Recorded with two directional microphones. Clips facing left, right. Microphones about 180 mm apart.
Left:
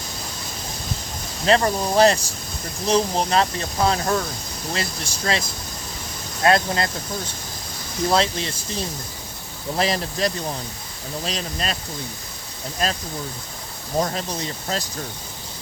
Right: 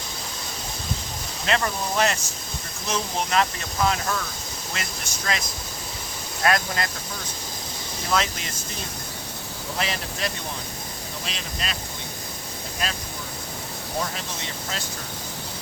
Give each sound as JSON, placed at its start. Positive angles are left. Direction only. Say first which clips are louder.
{"t": 1.5, "sound": "speech", "louder": "left 7 dB", "side_deg": 35}
{"t": 6.4, "sound": "speech", "louder": "left 5 dB", "side_deg": 30}
{"t": 8.1, "sound": "speech", "louder": "left 4 dB", "side_deg": 30}
{"t": 9.7, "sound": "speech", "louder": "left 7 dB", "side_deg": 35}
{"t": 12.8, "sound": "speech", "louder": "left 6 dB", "side_deg": 40}
{"t": 14.0, "sound": "speech", "louder": "left 10 dB", "side_deg": 40}